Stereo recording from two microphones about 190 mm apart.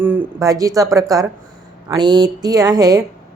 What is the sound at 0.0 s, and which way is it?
Speech, 10° right (ahead or behind).